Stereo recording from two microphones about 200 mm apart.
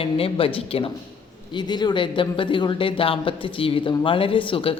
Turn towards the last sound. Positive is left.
turn(degrees=25)  # may be behind; listen again after turning